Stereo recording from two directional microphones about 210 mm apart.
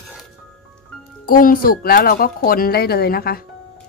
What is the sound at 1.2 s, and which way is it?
Speech, 40° left (ahead or behind).